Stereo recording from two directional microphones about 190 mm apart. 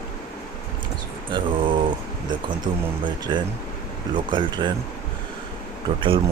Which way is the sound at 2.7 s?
25° right (ahead or behind).